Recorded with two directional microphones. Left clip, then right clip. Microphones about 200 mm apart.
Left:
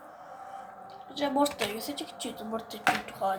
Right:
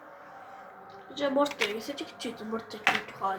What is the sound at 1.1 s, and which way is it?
A woman's voice, 25° left (ahead or behind).